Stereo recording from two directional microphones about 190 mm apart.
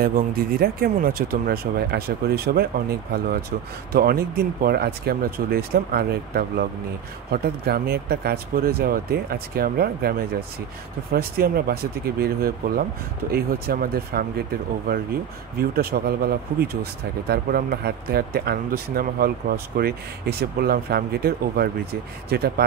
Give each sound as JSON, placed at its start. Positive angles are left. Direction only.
{"t": 0.0, "sound": "speech", "side_deg": -50}
{"t": 15.7, "sound": "speech", "side_deg": -55}